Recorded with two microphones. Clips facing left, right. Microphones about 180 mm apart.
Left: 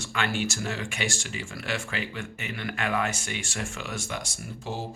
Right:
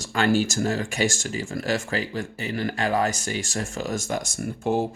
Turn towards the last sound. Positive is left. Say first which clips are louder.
# right 11 dB
turn(degrees=-50)  # may be behind; listen again after turning